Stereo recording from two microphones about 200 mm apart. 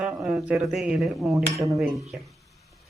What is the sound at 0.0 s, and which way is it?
Speech, 5° right (ahead or behind).